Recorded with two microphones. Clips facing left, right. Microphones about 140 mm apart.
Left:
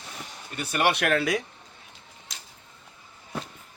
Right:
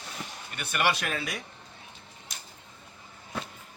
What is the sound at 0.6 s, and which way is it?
Speech, 40° left (ahead or behind).